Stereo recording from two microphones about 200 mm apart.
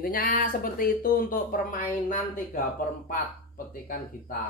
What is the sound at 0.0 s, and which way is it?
Speech, 45° left (ahead or behind).